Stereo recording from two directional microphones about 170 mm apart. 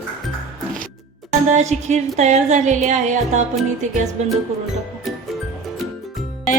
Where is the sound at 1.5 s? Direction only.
45° right (ahead or behind).